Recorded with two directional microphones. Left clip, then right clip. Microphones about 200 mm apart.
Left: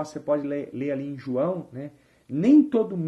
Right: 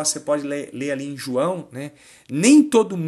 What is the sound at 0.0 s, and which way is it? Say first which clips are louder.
Speech: right 4 dB; 15° right (ahead or behind).